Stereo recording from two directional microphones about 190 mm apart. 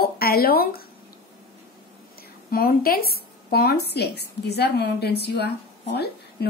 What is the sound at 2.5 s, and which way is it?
A woman's voice, 50° left (ahead or behind).